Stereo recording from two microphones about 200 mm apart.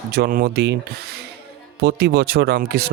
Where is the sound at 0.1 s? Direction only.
50° right (ahead or behind).